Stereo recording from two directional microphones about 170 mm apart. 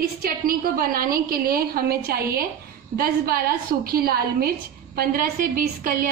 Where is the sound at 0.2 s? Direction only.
60° right (ahead or behind).